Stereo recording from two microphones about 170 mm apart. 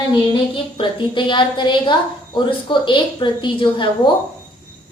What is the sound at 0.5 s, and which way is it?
A woman's voice, 30° left (ahead or behind).